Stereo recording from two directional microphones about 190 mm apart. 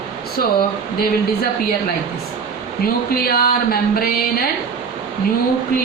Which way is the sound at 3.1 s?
50° left (ahead or behind).